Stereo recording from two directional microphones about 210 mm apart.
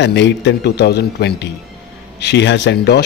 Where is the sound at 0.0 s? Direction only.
55° left (ahead or behind).